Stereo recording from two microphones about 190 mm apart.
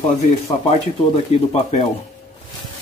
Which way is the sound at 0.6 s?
35° left (ahead or behind).